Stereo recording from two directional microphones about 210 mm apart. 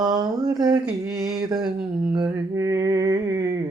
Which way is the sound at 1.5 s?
20° right (ahead or behind).